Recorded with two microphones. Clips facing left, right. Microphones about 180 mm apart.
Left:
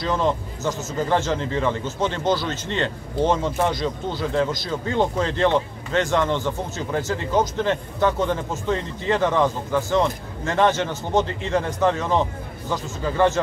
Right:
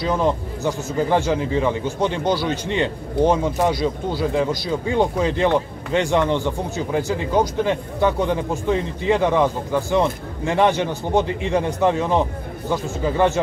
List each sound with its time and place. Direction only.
0.0 s speech: 15° right (ahead or behind)